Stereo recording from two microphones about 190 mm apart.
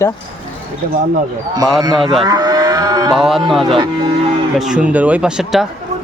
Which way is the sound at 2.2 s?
20° right (ahead or behind).